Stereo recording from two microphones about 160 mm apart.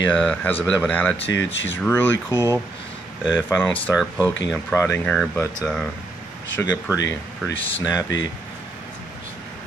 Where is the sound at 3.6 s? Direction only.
10° left (ahead or behind).